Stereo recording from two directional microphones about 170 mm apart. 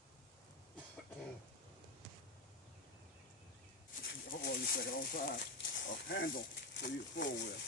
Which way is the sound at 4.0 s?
70° left (ahead or behind).